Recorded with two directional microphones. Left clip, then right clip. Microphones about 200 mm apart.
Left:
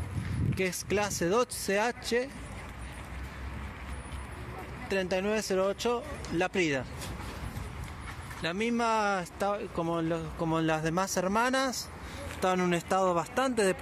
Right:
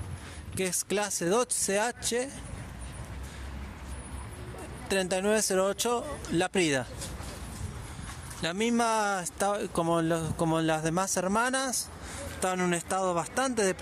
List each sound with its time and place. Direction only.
0.6 s speech: 20° right (ahead or behind)
4.8 s speech: 25° right (ahead or behind)
8.4 s speech: 25° right (ahead or behind)